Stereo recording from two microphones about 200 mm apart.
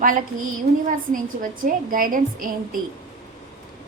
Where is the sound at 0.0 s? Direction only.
45° right (ahead or behind).